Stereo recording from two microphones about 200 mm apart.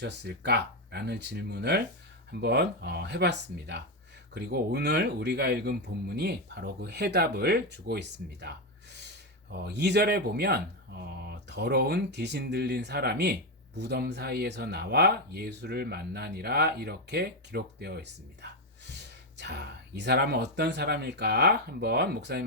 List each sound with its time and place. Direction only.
0.0 s speech: 55° right (ahead or behind)